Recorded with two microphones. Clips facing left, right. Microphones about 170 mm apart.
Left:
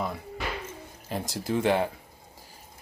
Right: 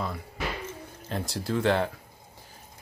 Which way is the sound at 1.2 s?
15° left (ahead or behind).